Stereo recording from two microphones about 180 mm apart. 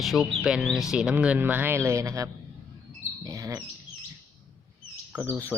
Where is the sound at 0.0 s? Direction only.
Centre (ahead or behind); by 2.3 s 15° right (ahead or behind).